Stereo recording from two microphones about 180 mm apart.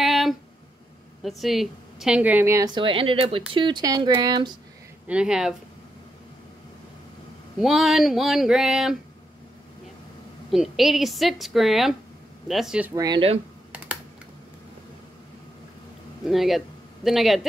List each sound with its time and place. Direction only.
0.0 s a sound: centre (ahead or behind)
1.2 s a woman's voice: centre (ahead or behind); by 4.5 s 25° right (ahead or behind)
5.0 s a woman's voice: 5° right (ahead or behind)
7.5 s a woman's voice: centre (ahead or behind)
10.5 s a woman's voice: centre (ahead or behind)
12.9 s a woman's voice: 20° right (ahead or behind)
16.3 s speech: centre (ahead or behind)